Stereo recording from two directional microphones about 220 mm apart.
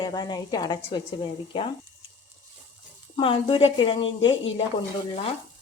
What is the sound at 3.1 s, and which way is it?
Speech, 25° left (ahead or behind).